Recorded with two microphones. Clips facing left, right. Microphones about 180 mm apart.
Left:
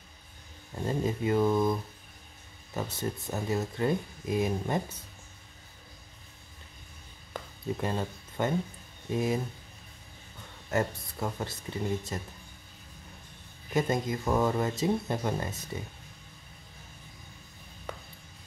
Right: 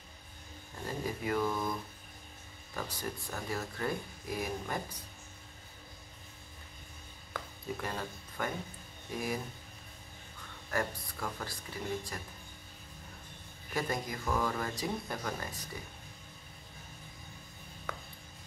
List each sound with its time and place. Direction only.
0.8 s speech: 25° left (ahead or behind)
7.3 s a sound: 25° left (ahead or behind)
9.1 s speech: 25° left (ahead or behind)
10.7 s speech: 25° left (ahead or behind)
13.7 s speech: 20° left (ahead or behind)